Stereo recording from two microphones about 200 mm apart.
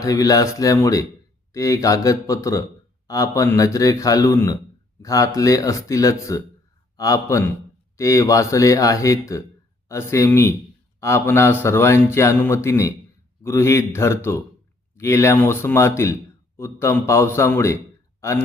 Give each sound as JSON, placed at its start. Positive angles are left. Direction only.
{"t": 0.0, "sound": "a man's voice", "side_deg": 15}